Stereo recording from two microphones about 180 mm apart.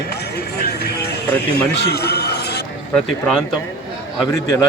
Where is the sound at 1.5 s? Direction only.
65° left (ahead or behind).